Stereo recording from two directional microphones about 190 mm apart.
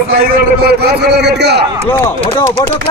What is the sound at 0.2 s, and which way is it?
A man's voice, 55° right (ahead or behind).